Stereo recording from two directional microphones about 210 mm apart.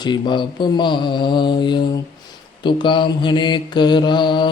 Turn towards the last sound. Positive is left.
turn(degrees=20)  # may be behind; listen again after turning